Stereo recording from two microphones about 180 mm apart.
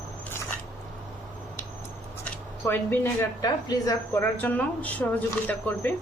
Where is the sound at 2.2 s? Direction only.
10° left (ahead or behind).